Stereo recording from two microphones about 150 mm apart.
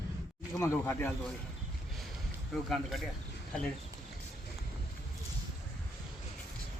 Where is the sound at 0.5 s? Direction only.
20° left (ahead or behind).